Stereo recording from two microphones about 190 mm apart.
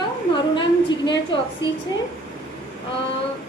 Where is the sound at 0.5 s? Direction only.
25° left (ahead or behind).